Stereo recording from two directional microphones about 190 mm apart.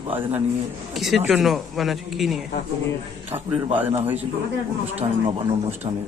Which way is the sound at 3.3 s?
30° right (ahead or behind).